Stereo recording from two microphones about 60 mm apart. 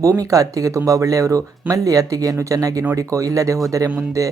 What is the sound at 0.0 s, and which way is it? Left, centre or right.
Speech, right.